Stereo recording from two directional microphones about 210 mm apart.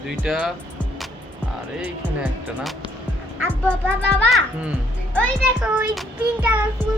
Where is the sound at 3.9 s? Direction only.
55° right (ahead or behind).